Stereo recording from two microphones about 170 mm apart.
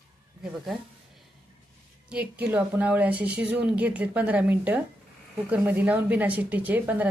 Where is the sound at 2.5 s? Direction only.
10° right (ahead or behind).